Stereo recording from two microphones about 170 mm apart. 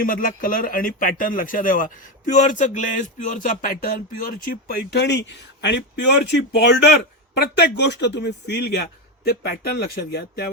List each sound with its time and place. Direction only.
0.0 s speech: 55° left (ahead or behind)
4.9 s a man's voice: 90° left; by 9.3 s 75° left (ahead or behind)
9.3 s speech: 65° left (ahead or behind)